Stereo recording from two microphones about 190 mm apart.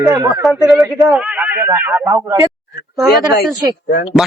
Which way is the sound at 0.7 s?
Centre (ahead or behind).